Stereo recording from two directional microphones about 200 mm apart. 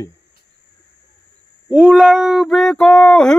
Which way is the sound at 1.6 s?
5° right (ahead or behind).